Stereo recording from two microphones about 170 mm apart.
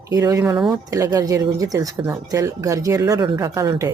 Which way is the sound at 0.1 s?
20° right (ahead or behind).